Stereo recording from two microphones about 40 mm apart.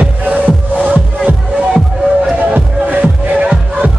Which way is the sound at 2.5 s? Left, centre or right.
Right.